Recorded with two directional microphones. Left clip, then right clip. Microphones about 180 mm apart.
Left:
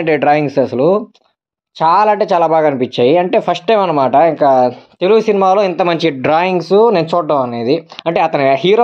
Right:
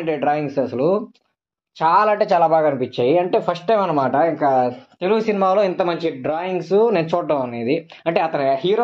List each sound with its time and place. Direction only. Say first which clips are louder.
0.0 s speech: left 8 dB; 45° left (ahead or behind); by 2.1 s 30° left (ahead or behind)
2.1 s speech: left 4 dB; 20° left (ahead or behind); by 3.7 s 40° left (ahead or behind)
3.7 s speech: left 7 dB; 25° left (ahead or behind)
5.9 s speech: left 8 dB; 55° left (ahead or behind)
6.5 s speech: left 7 dB; 25° left (ahead or behind); by 8.8 s 45° left (ahead or behind)